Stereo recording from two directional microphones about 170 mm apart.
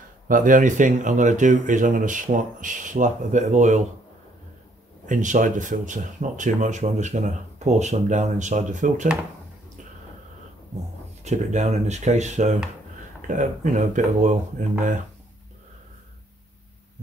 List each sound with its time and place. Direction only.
0.3 s speech: 50° right (ahead or behind)
5.0 s speech: 50° right (ahead or behind)
11.2 s speech: 45° right (ahead or behind)